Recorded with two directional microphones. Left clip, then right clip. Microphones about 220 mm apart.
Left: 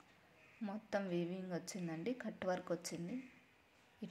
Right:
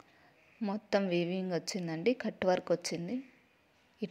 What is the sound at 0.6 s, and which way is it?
Speech, 30° right (ahead or behind).